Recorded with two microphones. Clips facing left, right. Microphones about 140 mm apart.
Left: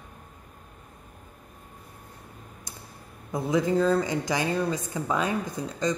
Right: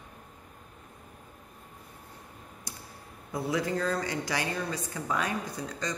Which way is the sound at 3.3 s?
20° left (ahead or behind).